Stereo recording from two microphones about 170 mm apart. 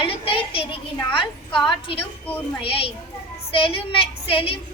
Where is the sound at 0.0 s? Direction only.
35° left (ahead or behind).